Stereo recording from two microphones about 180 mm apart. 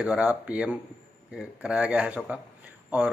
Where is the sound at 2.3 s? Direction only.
10° right (ahead or behind).